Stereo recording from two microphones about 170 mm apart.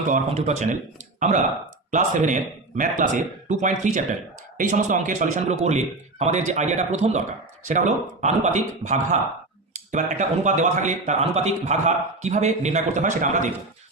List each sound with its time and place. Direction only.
0.1 s speech: 40° right (ahead or behind)